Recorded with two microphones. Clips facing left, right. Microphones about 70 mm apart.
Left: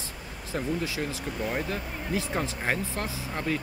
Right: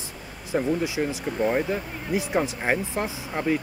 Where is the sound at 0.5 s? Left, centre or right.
Centre.